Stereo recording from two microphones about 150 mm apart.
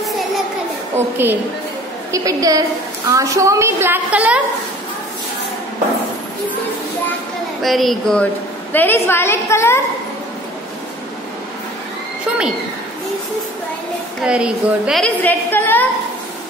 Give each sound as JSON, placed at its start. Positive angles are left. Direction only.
{"t": 0.9, "sound": "a sound", "side_deg": -15}
{"t": 2.1, "sound": "a woman's voice", "side_deg": -20}
{"t": 7.6, "sound": "a woman's voice", "side_deg": 0}
{"t": 8.7, "sound": "a woman's voice", "side_deg": 15}
{"t": 14.2, "sound": "a woman's voice", "side_deg": -5}
{"t": 15.2, "sound": "a woman's voice", "side_deg": 15}